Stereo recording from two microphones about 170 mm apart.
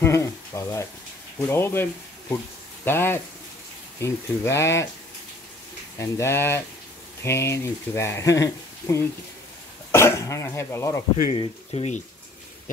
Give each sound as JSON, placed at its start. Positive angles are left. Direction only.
{"t": 0.0, "sound": "speech", "side_deg": 15}
{"t": 5.9, "sound": "speech", "side_deg": 15}
{"t": 11.3, "sound": "speech", "side_deg": 40}